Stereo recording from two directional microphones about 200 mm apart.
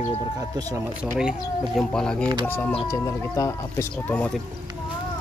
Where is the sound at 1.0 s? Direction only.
5° right (ahead or behind).